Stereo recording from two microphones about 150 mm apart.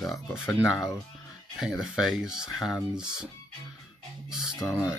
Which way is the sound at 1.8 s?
5° right (ahead or behind).